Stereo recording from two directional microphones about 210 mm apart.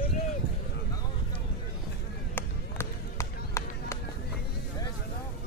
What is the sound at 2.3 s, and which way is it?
Run, 15° left (ahead or behind).